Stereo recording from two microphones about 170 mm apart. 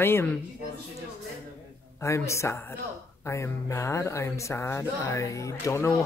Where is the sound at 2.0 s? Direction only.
15° left (ahead or behind).